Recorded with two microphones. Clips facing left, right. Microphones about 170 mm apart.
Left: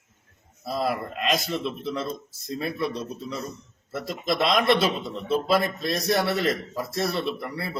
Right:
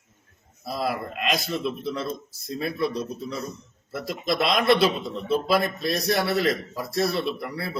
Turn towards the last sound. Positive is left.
turn(degrees=0)  # may be behind; listen again after turning